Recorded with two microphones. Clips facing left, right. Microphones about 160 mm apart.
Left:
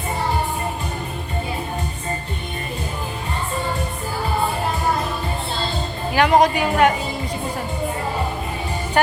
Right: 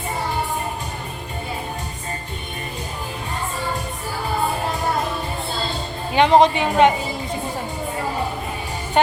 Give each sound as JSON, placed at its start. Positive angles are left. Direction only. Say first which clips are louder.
{"t": 6.1, "sound": "a woman's voice", "louder": "right 2 dB", "side_deg": -25}